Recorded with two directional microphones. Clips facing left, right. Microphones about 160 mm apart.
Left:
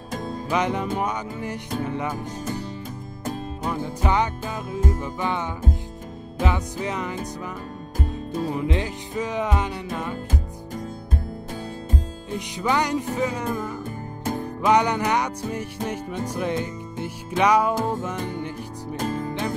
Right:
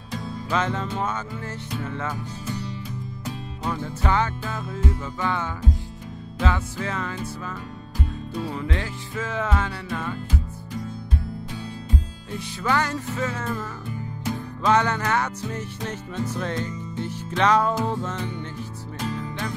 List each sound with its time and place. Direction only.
0.1 s music: 45° left (ahead or behind)
0.5 s music: 15° left (ahead or behind)
2.4 s music: 45° left (ahead or behind)
3.6 s music: 15° left (ahead or behind)
8.0 s music: 45° left (ahead or behind)
8.5 s music: 20° left (ahead or behind)
10.1 s music: 45° left (ahead or behind)
12.4 s music: 15° left (ahead or behind)
13.8 s music: 45° left (ahead or behind)
14.6 s music: 15° left (ahead or behind)
18.9 s music: 45° left (ahead or behind)